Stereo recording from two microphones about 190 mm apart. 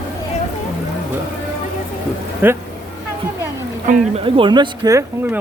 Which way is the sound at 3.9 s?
30° right (ahead or behind).